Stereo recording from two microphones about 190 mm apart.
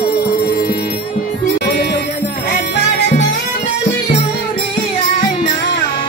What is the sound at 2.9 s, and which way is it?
Music, 60° left (ahead or behind).